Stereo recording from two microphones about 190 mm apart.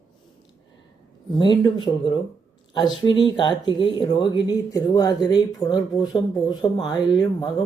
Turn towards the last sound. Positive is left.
turn(degrees=25)  # may be behind; listen again after turning